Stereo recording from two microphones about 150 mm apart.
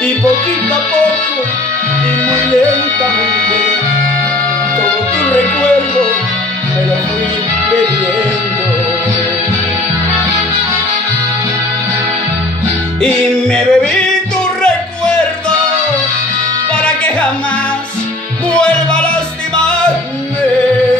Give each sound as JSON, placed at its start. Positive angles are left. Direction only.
{"t": 5.2, "sound": "music", "side_deg": 10}
{"t": 13.0, "sound": "music", "side_deg": 5}
{"t": 16.7, "sound": "music", "side_deg": 5}
{"t": 18.5, "sound": "music", "side_deg": 5}